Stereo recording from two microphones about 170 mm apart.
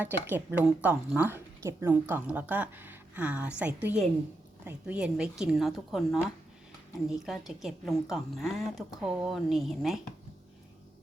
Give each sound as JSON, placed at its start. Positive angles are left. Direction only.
{"t": 0.0, "sound": "a woman's voice", "side_deg": -10}